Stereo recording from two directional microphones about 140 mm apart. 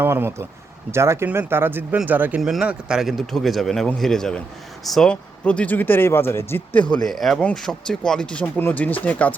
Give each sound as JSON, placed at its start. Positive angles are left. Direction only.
{"t": 0.0, "sound": "speech", "side_deg": -15}
{"t": 6.9, "sound": "speech", "side_deg": 0}